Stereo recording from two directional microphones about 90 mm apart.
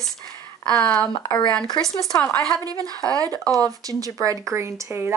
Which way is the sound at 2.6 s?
45° right (ahead or behind).